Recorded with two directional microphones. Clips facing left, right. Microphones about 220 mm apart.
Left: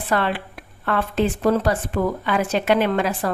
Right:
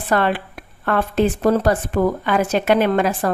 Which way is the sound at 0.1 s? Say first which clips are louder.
Right 4 dB; 45° right (ahead or behind).